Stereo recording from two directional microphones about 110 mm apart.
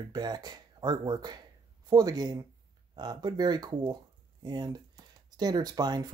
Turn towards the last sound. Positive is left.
turn(degrees=-35)  # may be behind; listen again after turning